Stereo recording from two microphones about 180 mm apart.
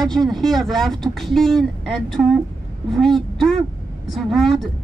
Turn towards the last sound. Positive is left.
turn(degrees=0)  # may be behind; listen again after turning